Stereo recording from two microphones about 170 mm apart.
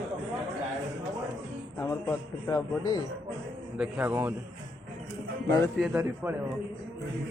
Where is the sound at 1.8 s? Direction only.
20° left (ahead or behind).